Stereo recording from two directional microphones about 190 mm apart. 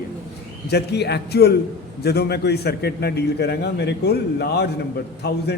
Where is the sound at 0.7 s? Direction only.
60° left (ahead or behind).